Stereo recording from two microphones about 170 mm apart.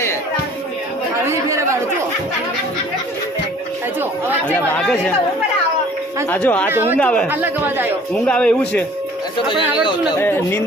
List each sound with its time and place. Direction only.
1.3 s speech: 15° right (ahead or behind)
4.7 s a man's voice: 10° left (ahead or behind)
6.3 s a man's voice: 10° left (ahead or behind)
6.7 s speech: 10° right (ahead or behind)
7.0 s a man's voice: 10° left (ahead or behind)
7.3 s speech: 10° right (ahead or behind)
8.3 s a man's voice: 5° left (ahead or behind)
10.2 s a man's voice: 15° left (ahead or behind)